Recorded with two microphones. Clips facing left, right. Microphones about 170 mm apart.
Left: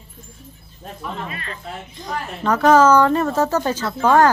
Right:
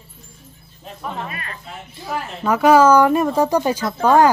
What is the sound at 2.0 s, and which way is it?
A woman's voice, 10° right (ahead or behind).